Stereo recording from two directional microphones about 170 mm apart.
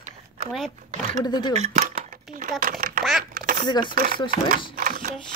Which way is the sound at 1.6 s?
50° right (ahead or behind).